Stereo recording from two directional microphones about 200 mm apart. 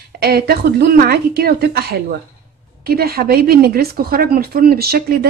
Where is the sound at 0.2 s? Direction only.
50° right (ahead or behind).